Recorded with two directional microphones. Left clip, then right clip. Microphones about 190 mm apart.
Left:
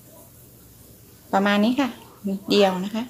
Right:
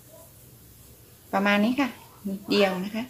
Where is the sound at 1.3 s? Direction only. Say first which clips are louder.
Left 3 dB; 35° left (ahead or behind).